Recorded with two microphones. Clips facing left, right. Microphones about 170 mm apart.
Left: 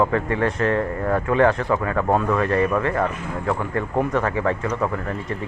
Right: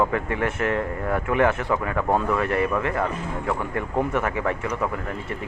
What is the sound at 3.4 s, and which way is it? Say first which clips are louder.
Speech: left 4 dB; 15° right (ahead or behind).